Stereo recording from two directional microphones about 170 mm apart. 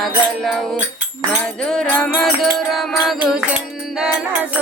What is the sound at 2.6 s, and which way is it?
Music, centre (ahead or behind).